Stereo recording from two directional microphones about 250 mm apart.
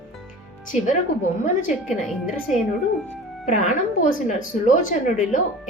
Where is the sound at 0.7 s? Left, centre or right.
Left.